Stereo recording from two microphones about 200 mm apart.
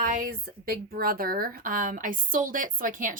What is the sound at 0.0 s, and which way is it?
A woman's voice, 45° right (ahead or behind).